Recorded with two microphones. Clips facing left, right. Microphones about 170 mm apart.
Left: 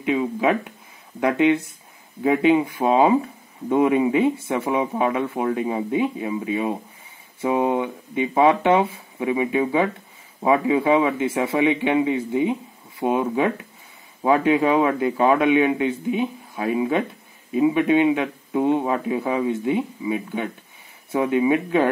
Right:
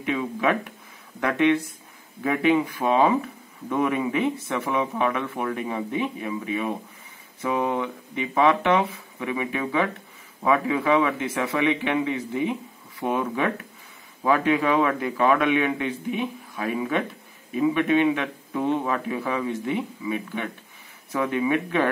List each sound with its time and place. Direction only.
0.1 s speech: 25° left (ahead or behind)
2.2 s speech: 25° left (ahead or behind)
8.5 s speech: 30° left (ahead or behind); by 12.5 s 10° left (ahead or behind)
13.2 s speech: 25° left (ahead or behind)